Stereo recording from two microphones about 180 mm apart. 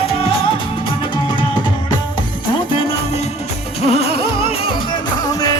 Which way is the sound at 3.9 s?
35° left (ahead or behind).